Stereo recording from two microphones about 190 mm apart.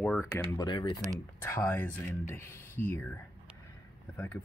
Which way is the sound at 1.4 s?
10° left (ahead or behind).